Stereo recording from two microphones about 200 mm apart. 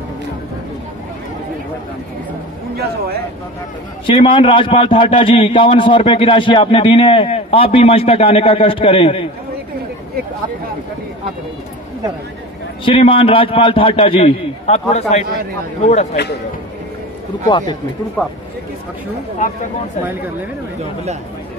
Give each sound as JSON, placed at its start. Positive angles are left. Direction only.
{"t": 4.0, "sound": "a man's voice", "side_deg": 25}
{"t": 12.8, "sound": "a man's voice", "side_deg": 25}
{"t": 17.5, "sound": "a man's voice", "side_deg": 20}